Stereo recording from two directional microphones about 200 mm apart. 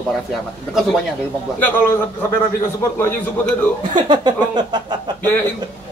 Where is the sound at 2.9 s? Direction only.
10° left (ahead or behind).